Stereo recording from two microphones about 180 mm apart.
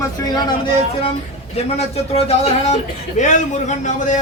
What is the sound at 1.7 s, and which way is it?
Speech, 35° left (ahead or behind).